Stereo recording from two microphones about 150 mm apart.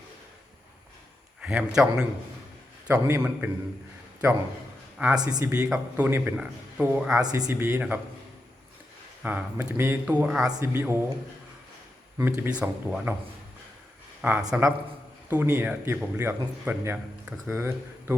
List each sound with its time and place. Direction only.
1.4 s a man's voice: 5° right (ahead or behind)
2.8 s speech: 15° right (ahead or behind)
4.9 s speech: 5° right (ahead or behind)
5.3 s speech: 20° right (ahead or behind)
5.6 s a man's voice: 5° right (ahead or behind)
6.1 s speech: 15° right (ahead or behind)
7.3 s speech: 25° right (ahead or behind)
9.2 s speech: 10° right (ahead or behind)
10.5 s speech: 20° right (ahead or behind)
12.1 s speech: 15° right (ahead or behind)
14.2 s speech: 10° right (ahead or behind)